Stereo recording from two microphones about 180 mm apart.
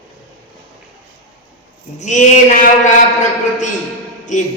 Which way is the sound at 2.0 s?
40° left (ahead or behind).